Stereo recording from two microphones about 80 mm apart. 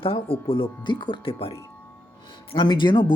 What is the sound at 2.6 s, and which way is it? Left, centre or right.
Speech, left.